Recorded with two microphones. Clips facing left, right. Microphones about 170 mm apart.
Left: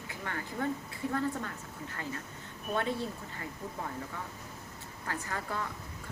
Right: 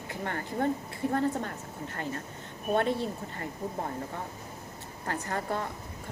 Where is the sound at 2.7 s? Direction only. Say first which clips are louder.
Right 5 dB; 60° right (ahead or behind).